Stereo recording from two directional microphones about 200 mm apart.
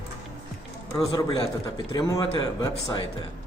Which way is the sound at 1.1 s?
20° left (ahead or behind).